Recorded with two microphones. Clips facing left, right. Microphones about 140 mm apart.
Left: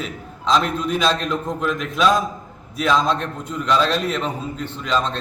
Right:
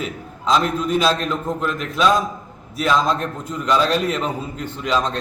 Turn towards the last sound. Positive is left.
turn(degrees=-10)  # may be behind; listen again after turning